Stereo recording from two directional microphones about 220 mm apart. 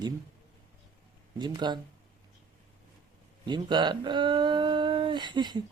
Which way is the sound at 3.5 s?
20° right (ahead or behind).